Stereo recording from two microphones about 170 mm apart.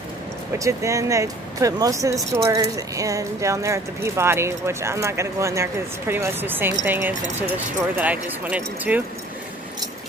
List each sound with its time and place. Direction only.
0.6 s speech: 20° right (ahead or behind)